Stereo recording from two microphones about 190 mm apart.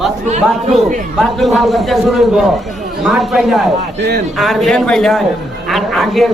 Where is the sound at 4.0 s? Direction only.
60° right (ahead or behind).